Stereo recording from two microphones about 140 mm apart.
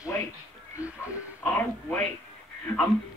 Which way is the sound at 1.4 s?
10° left (ahead or behind).